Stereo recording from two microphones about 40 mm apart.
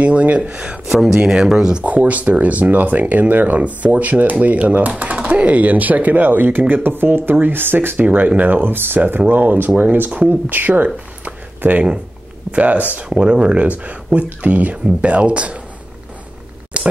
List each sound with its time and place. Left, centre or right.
0.0 s speech: right
0.9 s speech: centre
1.8 s speech: right
11.2 s a sound: right
12.4 s speech: right
13.1 s speech: right
13.7 s speech: right
16.8 s a sound: right